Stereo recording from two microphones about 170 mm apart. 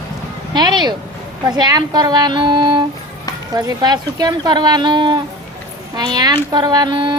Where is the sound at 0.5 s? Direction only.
25° right (ahead or behind).